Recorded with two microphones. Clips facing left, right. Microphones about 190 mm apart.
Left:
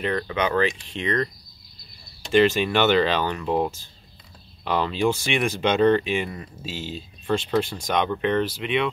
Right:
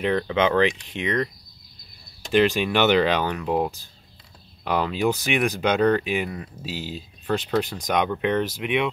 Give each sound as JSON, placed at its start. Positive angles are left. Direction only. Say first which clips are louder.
{"t": 0.0, "sound": "speech", "louder": "right 3 dB", "side_deg": -15}
{"t": 2.3, "sound": "speech", "louder": "left 1 dB", "side_deg": -10}